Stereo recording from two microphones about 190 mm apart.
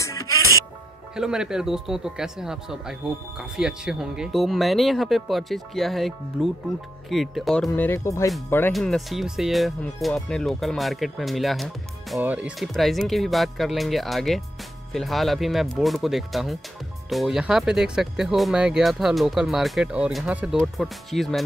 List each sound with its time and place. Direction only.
0.0 s music: 15° left (ahead or behind)
1.1 s speech: 5° right (ahead or behind)
8.7 s speech: centre (ahead or behind)